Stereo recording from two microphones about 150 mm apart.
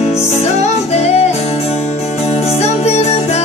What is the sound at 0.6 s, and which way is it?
Music, 45° left (ahead or behind).